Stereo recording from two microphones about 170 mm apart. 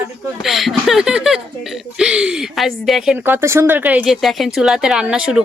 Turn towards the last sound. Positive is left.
turn(degrees=-5)  # may be behind; listen again after turning